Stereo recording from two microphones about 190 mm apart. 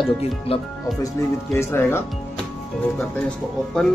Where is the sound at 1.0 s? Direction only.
15° left (ahead or behind).